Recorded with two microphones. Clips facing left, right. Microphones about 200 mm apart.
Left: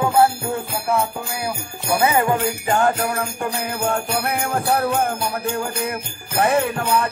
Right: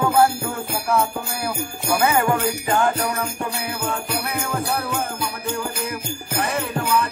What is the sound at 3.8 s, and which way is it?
Jingle bell, 60° left (ahead or behind).